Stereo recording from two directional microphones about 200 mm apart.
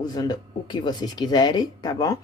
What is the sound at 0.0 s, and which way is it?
Speech, 20° left (ahead or behind).